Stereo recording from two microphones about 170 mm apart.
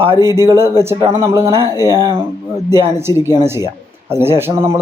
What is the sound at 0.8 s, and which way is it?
Speech, 15° right (ahead or behind).